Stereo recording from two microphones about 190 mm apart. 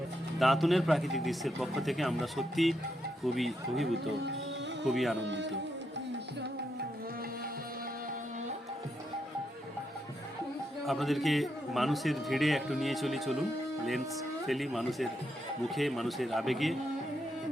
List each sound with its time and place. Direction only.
0.3 s a man's voice: centre (ahead or behind)
5.2 s speech: 70° right (ahead or behind)
10.8 s a man's voice: centre (ahead or behind)
14.4 s a man's voice: centre (ahead or behind)